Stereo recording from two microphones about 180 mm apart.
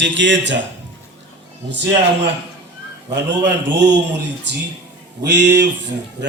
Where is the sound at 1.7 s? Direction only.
75° right (ahead or behind).